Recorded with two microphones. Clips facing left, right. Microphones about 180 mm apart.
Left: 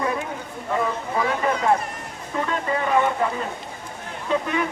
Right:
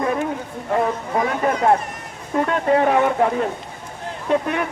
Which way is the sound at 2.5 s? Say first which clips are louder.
Right 6 dB; 65° right (ahead or behind).